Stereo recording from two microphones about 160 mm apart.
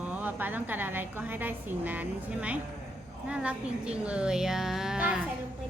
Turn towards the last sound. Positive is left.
turn(degrees=-5)  # may be behind; listen again after turning